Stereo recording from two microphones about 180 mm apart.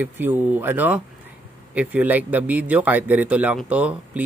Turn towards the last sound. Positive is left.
turn(degrees=-5)  # may be behind; listen again after turning